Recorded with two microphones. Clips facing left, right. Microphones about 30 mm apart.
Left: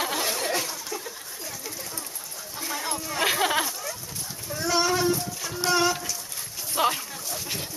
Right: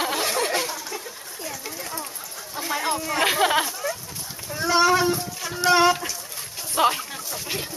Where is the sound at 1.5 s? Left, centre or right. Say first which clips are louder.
Right 5 dB; right.